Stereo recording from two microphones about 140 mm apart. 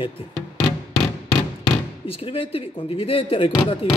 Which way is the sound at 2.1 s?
40° left (ahead or behind).